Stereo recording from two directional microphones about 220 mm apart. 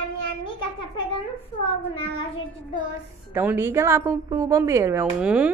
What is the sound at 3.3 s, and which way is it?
A woman's voice, 10° right (ahead or behind).